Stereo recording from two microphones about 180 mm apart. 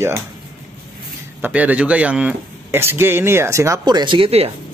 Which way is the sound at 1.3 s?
10° right (ahead or behind).